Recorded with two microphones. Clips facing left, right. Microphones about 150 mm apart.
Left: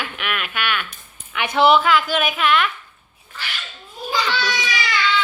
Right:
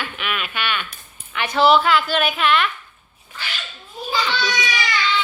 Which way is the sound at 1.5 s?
20° left (ahead or behind).